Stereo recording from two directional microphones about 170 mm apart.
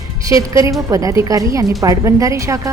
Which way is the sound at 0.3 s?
20° right (ahead or behind).